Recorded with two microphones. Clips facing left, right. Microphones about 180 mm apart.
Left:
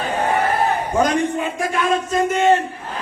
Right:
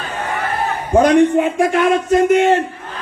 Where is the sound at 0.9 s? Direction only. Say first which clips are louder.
Right 10 dB; 70° right (ahead or behind).